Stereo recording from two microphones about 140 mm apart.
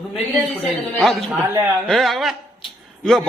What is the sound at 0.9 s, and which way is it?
Speech, centre (ahead or behind).